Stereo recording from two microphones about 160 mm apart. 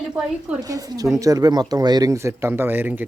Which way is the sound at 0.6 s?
25° right (ahead or behind).